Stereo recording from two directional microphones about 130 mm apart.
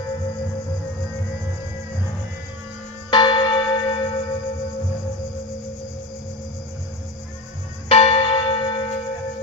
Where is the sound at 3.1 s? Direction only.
35° left (ahead or behind).